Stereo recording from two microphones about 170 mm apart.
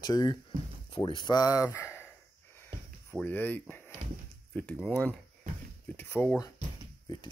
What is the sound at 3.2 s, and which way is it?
Speech, 10° left (ahead or behind).